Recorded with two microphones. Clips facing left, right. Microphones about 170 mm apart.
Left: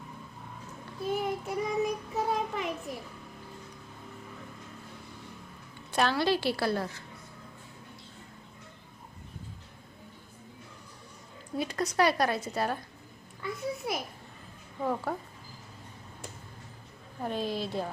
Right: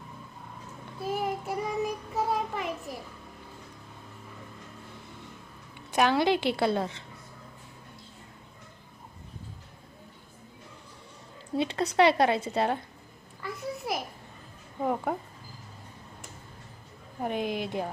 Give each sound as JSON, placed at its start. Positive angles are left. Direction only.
{"t": 1.0, "sound": "child singing", "side_deg": 0}
{"t": 2.3, "sound": "a sound", "side_deg": 0}
{"t": 5.9, "sound": "a woman's voice", "side_deg": -15}
{"t": 11.5, "sound": "a woman's voice", "side_deg": -25}
{"t": 13.4, "sound": "a sound", "side_deg": 0}
{"t": 14.8, "sound": "a woman's voice", "side_deg": -20}
{"t": 17.2, "sound": "a woman's voice", "side_deg": -15}